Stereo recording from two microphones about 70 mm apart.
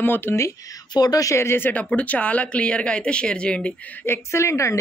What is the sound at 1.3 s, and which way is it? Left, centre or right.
Speech, left.